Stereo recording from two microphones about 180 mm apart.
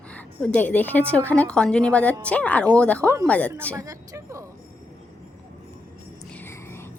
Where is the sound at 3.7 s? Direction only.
20° right (ahead or behind).